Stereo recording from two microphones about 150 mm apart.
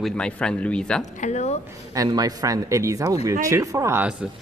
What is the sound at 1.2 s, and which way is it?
Speech, 50° left (ahead or behind).